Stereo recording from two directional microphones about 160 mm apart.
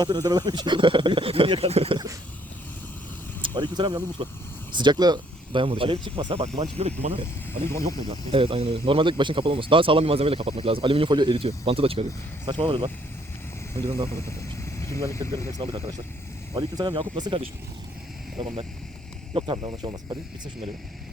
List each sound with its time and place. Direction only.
0.0 s speech: 25° right (ahead or behind)
3.4 s speech: 25° right (ahead or behind)
7.5 s speech: 15° left (ahead or behind)
7.9 s speech: 30° right (ahead or behind)
14.1 s speech: 15° left (ahead or behind)
16.6 s speech: 25° right (ahead or behind)